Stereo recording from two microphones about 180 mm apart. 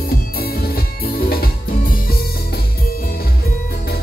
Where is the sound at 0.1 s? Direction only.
60° left (ahead or behind).